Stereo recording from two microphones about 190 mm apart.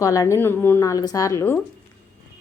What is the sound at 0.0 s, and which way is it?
A woman's voice, 15° left (ahead or behind).